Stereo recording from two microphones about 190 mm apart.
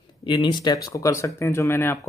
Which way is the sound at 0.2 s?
25° left (ahead or behind).